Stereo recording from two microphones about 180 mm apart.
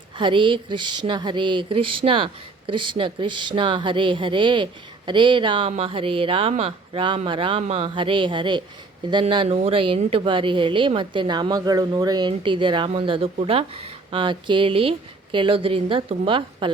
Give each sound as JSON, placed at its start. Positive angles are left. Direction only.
{"t": 0.2, "sound": "speech", "side_deg": -30}